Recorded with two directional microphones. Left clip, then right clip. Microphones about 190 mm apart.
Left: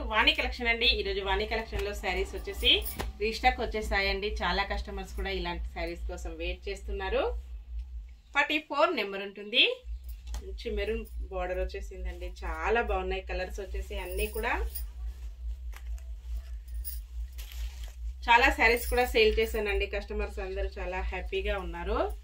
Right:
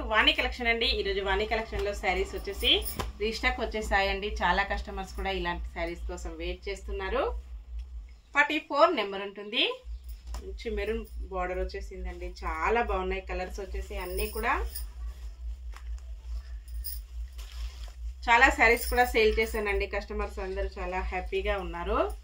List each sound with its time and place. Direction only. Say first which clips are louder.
0.1 s a woman's voice: right 1 dB; 10° right (ahead or behind)
8.3 s a woman's voice: right 2 dB; 15° right (ahead or behind)
18.2 s a woman's voice: right 1 dB; 10° right (ahead or behind)